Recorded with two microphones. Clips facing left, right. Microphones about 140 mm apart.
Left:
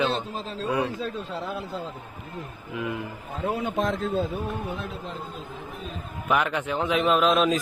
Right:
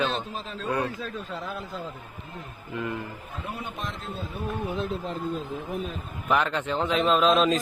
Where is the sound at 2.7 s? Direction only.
5° left (ahead or behind).